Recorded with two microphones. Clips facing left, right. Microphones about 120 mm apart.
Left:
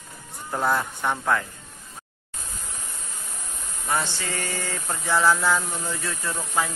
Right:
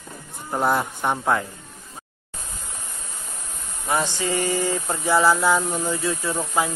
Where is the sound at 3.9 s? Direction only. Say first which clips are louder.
Right 4 dB; 15° right (ahead or behind).